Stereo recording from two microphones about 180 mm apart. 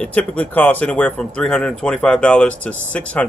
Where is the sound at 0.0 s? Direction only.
5° left (ahead or behind).